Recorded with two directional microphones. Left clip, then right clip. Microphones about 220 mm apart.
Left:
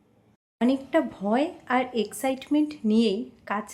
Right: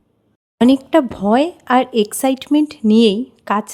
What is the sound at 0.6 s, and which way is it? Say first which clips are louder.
Speech: right 11 dB; 50° right (ahead or behind).